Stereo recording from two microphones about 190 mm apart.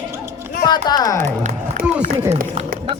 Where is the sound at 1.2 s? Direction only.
45° right (ahead or behind).